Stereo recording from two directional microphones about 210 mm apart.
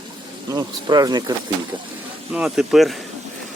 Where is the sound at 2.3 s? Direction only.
5° right (ahead or behind).